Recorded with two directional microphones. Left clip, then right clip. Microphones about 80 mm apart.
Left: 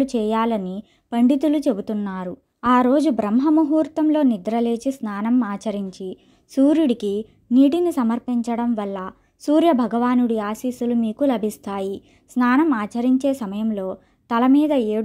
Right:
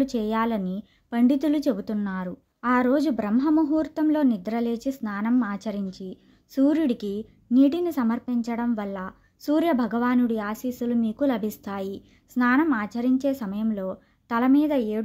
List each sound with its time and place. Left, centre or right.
0.0 s a woman's voice: left
2.6 s speech: left
2.9 s speech: left